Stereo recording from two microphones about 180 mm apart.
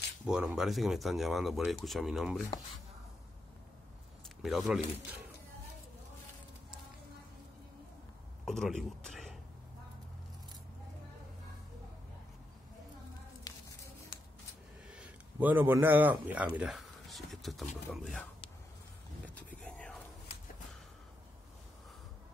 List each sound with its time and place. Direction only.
0.3 s speech: 5° right (ahead or behind)
4.4 s speech: centre (ahead or behind)
8.5 s speech: centre (ahead or behind)
13.5 s a sound: 20° left (ahead or behind)
14.9 s speech: 5° right (ahead or behind)
19.2 s vehicle: 10° left (ahead or behind)